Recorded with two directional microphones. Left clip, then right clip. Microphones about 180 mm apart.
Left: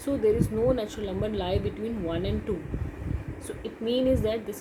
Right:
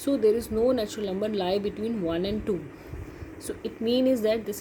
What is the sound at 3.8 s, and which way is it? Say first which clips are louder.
Speech: right 2 dB; 45° right (ahead or behind).